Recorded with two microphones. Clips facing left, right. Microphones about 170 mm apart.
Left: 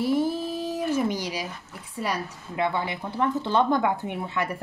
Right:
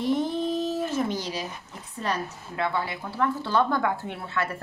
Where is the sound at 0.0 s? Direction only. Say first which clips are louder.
Left 1 dB; 5° left (ahead or behind).